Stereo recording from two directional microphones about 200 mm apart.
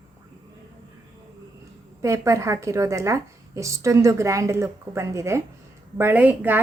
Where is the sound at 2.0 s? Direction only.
15° right (ahead or behind).